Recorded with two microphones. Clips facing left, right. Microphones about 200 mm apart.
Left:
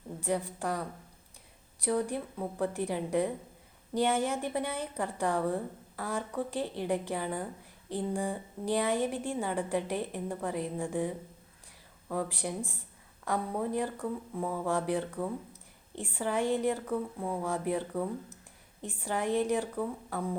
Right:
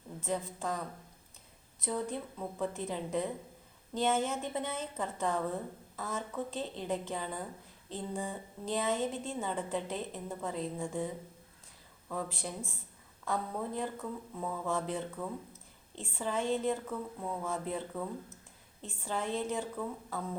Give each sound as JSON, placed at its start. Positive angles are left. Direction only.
{"t": 0.2, "sound": "a woman's voice", "side_deg": 15}
{"t": 12.1, "sound": "a woman's voice", "side_deg": 15}